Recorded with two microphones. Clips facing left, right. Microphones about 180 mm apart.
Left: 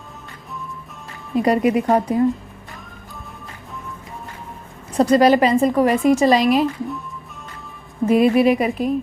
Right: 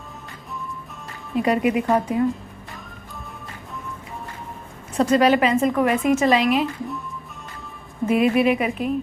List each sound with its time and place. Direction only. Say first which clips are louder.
1.4 s a woman's voice: left 3 dB; 40° left (ahead or behind)
4.9 s a woman's voice: left 3 dB; 35° left (ahead or behind)
8.1 s a woman's voice: left 3 dB; 35° left (ahead or behind)